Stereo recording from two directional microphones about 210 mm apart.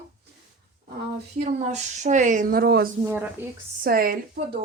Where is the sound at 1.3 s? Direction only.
35° right (ahead or behind).